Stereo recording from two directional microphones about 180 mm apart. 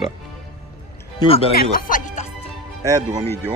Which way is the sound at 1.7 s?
50° left (ahead or behind).